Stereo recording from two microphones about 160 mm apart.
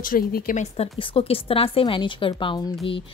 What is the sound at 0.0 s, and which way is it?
Speech, 65° left (ahead or behind).